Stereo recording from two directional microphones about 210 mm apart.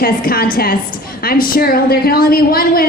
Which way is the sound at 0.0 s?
45° left (ahead or behind).